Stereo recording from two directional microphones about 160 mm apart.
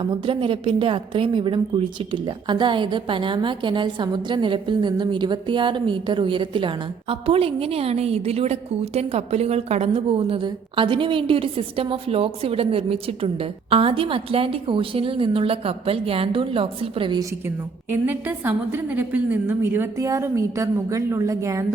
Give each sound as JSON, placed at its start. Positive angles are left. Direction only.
{"t": 0.0, "sound": "a woman's voice", "side_deg": -30}
{"t": 18.0, "sound": "a woman's voice", "side_deg": -10}